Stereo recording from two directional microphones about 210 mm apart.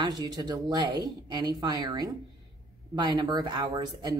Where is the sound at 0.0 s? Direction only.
20° right (ahead or behind).